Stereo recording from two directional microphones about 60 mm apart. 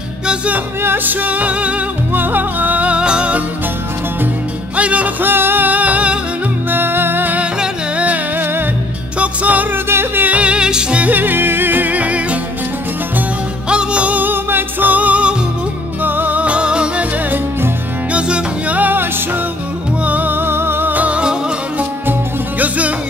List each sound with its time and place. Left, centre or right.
0.8 s music: right
4.7 s music: right
5.2 s music: right
6.7 s music: right
9.8 s music: right
10.2 s music: right
13.7 s music: centre
18.1 s music: right
20.1 s music: right